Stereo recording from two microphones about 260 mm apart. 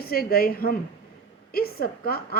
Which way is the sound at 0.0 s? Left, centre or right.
Left.